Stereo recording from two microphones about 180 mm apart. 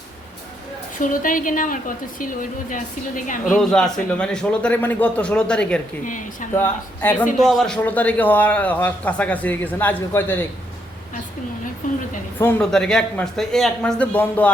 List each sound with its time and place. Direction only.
0.9 s a woman's voice: 45° left (ahead or behind)
3.5 s a man's voice: 5° left (ahead or behind)
6.1 s a woman's voice: 45° left (ahead or behind)
6.5 s a man's voice: 10° left (ahead or behind)
12.4 s a man's voice: 10° left (ahead or behind)